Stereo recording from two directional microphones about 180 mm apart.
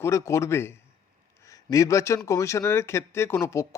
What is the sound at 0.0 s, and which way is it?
Speech, 15° left (ahead or behind).